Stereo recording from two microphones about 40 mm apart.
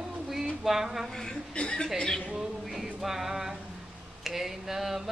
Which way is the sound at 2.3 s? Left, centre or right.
Centre.